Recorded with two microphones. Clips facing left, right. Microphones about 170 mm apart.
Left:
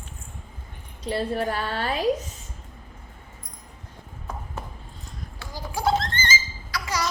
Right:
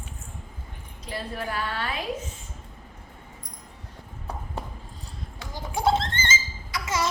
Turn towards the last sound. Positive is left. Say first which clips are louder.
# right 1 dB
turn(degrees=-25)  # may be behind; listen again after turning